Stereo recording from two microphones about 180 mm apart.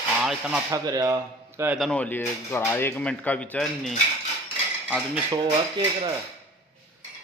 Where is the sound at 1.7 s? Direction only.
5° left (ahead or behind).